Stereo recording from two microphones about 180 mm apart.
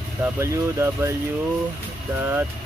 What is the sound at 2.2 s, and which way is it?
Speech, 10° right (ahead or behind).